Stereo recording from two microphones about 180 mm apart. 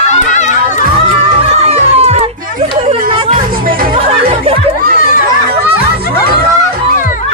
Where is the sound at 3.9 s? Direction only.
30° right (ahead or behind).